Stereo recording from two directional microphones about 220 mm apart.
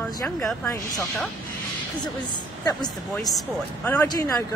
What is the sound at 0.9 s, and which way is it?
Speech, centre (ahead or behind).